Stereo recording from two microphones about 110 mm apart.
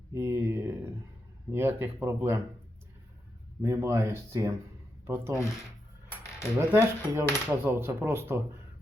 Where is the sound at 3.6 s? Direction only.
30° right (ahead or behind).